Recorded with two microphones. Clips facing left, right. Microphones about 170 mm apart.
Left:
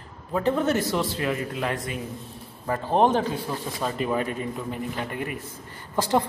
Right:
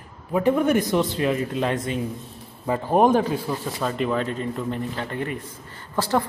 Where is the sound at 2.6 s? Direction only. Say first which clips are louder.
Right 3 dB; 10° right (ahead or behind).